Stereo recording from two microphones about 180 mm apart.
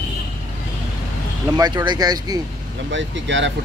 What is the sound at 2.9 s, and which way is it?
Speech, 90° right.